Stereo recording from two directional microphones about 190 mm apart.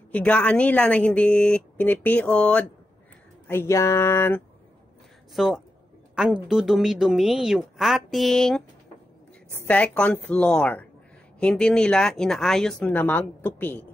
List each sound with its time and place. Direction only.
0.1 s speech: 5° left (ahead or behind)
5.3 s speech: centre (ahead or behind)
9.7 s speech: 5° left (ahead or behind)